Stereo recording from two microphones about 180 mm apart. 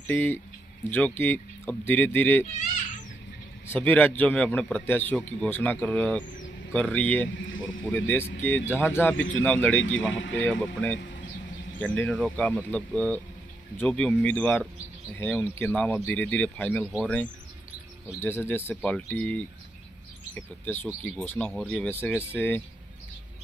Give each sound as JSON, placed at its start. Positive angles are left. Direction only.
{"t": 0.0, "sound": "speech", "side_deg": 10}
{"t": 3.6, "sound": "speech", "side_deg": 10}
{"t": 7.3, "sound": "speech", "side_deg": 90}
{"t": 7.8, "sound": "speech", "side_deg": 10}
{"t": 9.1, "sound": "speech", "side_deg": 90}
{"t": 9.4, "sound": "speech", "side_deg": 10}
{"t": 9.8, "sound": "speech", "side_deg": 90}
{"t": 10.4, "sound": "speech", "side_deg": 5}
{"t": 20.6, "sound": "speech", "side_deg": 10}